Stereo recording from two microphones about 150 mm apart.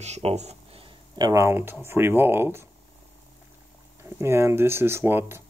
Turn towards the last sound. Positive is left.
turn(degrees=-15)  # may be behind; listen again after turning